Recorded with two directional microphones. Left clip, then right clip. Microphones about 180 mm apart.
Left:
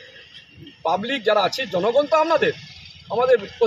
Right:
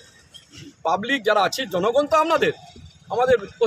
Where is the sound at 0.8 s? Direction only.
10° right (ahead or behind).